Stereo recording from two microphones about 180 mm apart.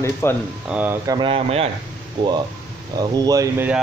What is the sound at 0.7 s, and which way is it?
Speech, 15° right (ahead or behind).